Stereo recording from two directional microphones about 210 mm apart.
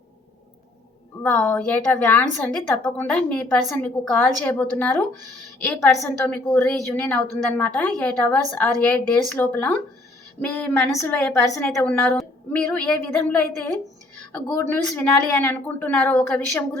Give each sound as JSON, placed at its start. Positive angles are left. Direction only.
{"t": 1.2, "sound": "a woman's voice", "side_deg": 10}